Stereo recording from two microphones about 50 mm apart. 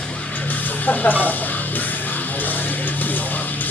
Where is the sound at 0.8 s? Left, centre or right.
Left.